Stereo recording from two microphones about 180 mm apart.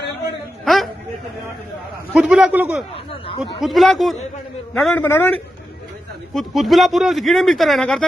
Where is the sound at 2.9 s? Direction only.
30° left (ahead or behind).